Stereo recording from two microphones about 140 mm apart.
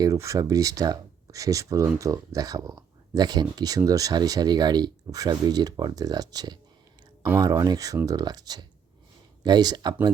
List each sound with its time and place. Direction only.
0.0 s speech: 25° right (ahead or behind)